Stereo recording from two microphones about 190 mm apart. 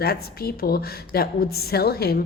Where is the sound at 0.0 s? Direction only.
55° left (ahead or behind).